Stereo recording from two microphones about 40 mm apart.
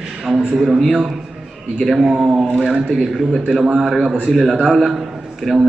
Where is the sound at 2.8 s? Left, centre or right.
Centre.